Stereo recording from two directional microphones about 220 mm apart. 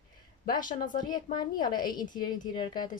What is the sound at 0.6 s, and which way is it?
Speech, 35° left (ahead or behind).